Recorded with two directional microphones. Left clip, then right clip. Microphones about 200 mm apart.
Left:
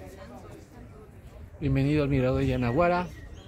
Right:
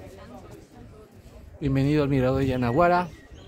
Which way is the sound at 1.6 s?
20° right (ahead or behind).